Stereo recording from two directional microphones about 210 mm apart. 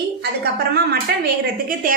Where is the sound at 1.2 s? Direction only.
40° right (ahead or behind).